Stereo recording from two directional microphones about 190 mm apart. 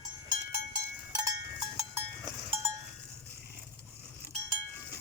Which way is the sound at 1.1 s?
15° right (ahead or behind).